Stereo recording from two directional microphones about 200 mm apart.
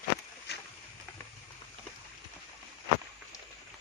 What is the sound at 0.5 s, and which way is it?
Boat, 55° left (ahead or behind).